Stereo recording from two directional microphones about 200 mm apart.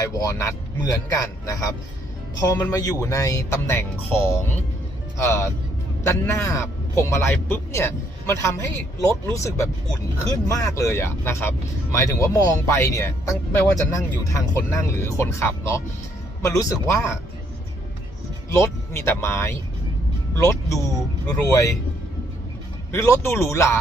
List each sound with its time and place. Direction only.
0.0 s a man's voice: 15° left (ahead or behind)
6.1 s a man's voice: 15° left (ahead or behind)
18.5 s a man's voice: 15° left (ahead or behind)
22.9 s a man's voice: 15° left (ahead or behind)